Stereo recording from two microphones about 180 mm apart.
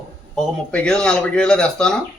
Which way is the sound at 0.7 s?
5° left (ahead or behind).